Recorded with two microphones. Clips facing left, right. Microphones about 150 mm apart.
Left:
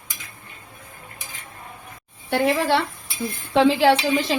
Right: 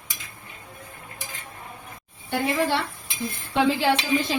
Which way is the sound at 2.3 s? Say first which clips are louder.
Left 4 dB; 90° left.